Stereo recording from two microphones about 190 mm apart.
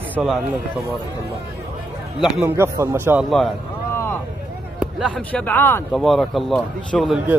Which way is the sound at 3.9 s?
10° left (ahead or behind).